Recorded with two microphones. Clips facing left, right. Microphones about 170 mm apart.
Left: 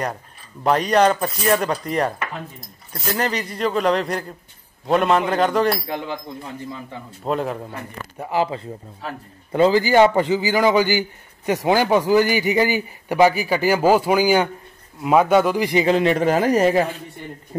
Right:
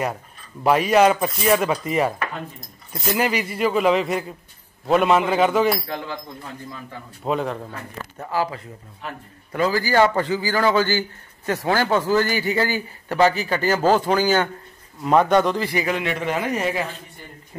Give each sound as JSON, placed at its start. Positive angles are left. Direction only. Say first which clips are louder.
{"t": 0.7, "sound": "speech", "louder": "right 1 dB", "side_deg": -5}
{"t": 7.2, "sound": "speech", "louder": "left 1 dB", "side_deg": 0}
{"t": 7.7, "sound": "speech", "louder": "left 2 dB", "side_deg": 15}
{"t": 15.7, "sound": "speech", "louder": "left 7 dB", "side_deg": 30}